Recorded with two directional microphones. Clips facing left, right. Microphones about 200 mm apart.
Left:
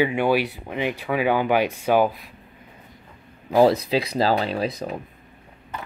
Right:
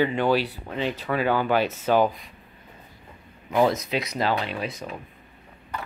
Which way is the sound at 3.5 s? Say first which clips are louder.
Left 5 dB; 35° left (ahead or behind).